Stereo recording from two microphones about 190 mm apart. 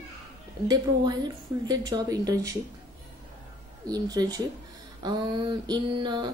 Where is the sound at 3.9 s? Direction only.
20° right (ahead or behind).